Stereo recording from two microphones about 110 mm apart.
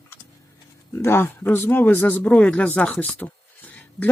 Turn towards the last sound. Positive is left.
turn(degrees=15)  # may be behind; listen again after turning